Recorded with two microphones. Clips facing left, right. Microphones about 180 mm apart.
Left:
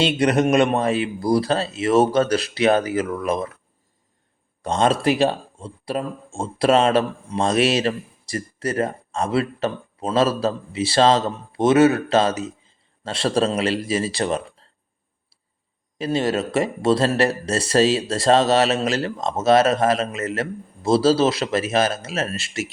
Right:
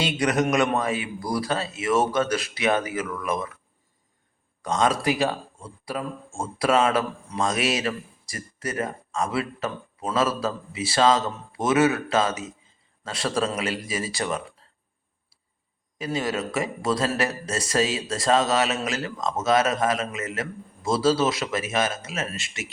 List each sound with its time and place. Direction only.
0.0 s a man's voice: 30° left (ahead or behind)
4.6 s a man's voice: 30° left (ahead or behind)
16.0 s speech: 30° left (ahead or behind)